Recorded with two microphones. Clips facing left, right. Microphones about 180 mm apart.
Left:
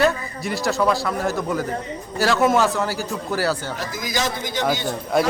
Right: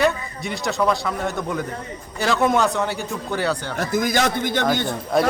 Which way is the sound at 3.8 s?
55° right (ahead or behind).